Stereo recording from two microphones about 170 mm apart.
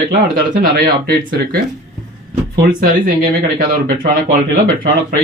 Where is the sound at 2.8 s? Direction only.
55° right (ahead or behind).